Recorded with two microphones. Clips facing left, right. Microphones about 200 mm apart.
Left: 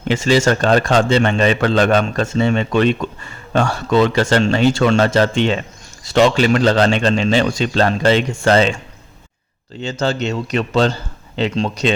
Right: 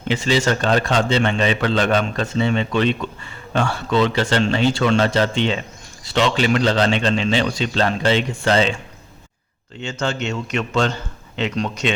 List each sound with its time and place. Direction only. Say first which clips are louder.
0.1 s a man's voice: left 4 dB; 45° left (ahead or behind)
9.8 s a man's voice: left 4 dB; 35° left (ahead or behind)